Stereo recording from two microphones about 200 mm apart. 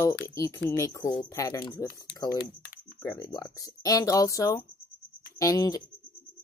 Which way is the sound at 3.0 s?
15° left (ahead or behind).